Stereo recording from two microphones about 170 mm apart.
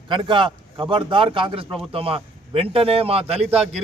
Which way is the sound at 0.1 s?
30° right (ahead or behind).